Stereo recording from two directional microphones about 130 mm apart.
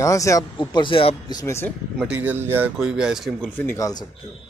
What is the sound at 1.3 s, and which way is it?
Speech, 20° left (ahead or behind).